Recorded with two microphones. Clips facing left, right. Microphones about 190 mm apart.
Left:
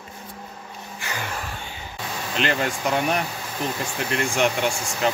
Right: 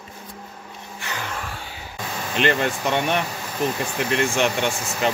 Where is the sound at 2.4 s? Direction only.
Centre (ahead or behind).